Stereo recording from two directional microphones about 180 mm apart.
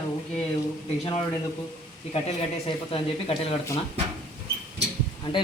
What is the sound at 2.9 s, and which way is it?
Speech, 35° left (ahead or behind).